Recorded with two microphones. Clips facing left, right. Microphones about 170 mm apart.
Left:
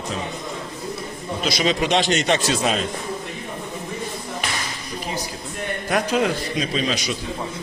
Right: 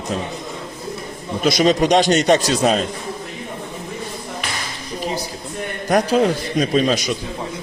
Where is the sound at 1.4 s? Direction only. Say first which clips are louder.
Right 7 dB; 45° right (ahead or behind).